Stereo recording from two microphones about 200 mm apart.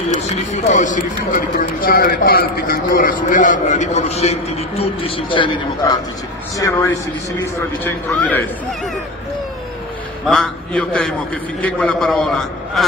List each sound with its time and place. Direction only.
0.2 s a man's voice: 35° left (ahead or behind); by 8.4 s 10° left (ahead or behind)
10.2 s a man's voice: centre (ahead or behind)